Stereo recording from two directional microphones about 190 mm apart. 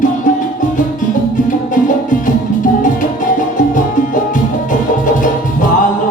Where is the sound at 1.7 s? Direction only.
45° left (ahead or behind).